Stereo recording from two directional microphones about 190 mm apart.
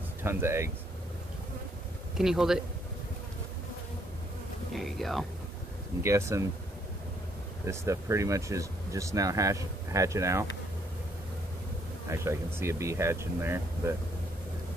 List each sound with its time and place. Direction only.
0.2 s speech: 15° right (ahead or behind)
2.1 s speech: centre (ahead or behind)
4.7 s speech: centre (ahead or behind)
6.0 s speech: 15° right (ahead or behind)
7.6 s speech: 15° right (ahead or behind)
12.1 s speech: 15° right (ahead or behind)